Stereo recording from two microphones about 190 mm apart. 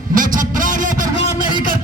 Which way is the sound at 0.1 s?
45° right (ahead or behind).